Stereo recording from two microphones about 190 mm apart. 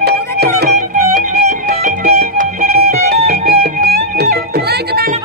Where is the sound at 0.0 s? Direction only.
55° right (ahead or behind); by 2.4 s 40° right (ahead or behind).